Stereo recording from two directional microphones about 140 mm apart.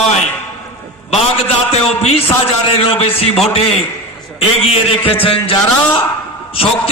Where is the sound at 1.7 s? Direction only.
45° left (ahead or behind).